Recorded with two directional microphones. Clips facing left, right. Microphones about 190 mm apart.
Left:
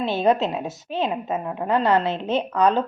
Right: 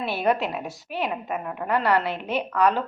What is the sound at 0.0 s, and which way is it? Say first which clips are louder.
Speech: left 4 dB; 20° left (ahead or behind).